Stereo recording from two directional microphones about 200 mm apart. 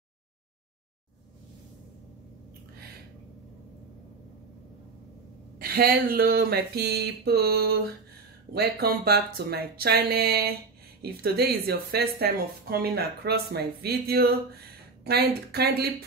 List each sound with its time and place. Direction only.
5.6 s speech: 50° right (ahead or behind)